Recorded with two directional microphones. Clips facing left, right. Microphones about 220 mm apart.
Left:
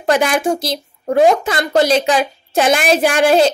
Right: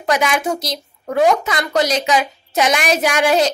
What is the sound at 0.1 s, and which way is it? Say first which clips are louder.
A woman's voice: left 3 dB; 35° left (ahead or behind).